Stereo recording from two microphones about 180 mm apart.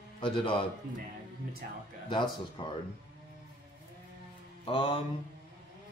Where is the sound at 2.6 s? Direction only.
30° left (ahead or behind).